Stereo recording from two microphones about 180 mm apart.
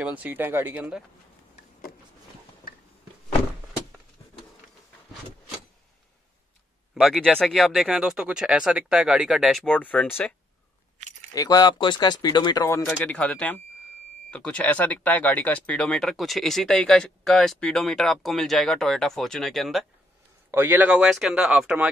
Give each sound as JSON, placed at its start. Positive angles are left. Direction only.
{"t": 0.0, "sound": "speech", "side_deg": -10}
{"t": 7.0, "sound": "speech", "side_deg": 0}
{"t": 11.3, "sound": "speech", "side_deg": 20}
{"t": 12.8, "sound": "speech", "side_deg": 5}
{"t": 20.5, "sound": "speech", "side_deg": -10}